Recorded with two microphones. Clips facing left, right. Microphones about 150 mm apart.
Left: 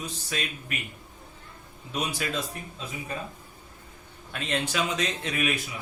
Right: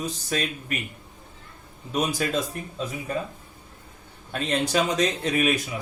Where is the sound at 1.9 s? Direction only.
40° right (ahead or behind).